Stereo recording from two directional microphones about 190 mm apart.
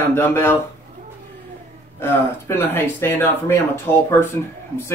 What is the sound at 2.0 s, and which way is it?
Speech, 10° left (ahead or behind).